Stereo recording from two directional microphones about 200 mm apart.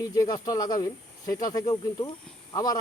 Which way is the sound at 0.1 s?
20° left (ahead or behind).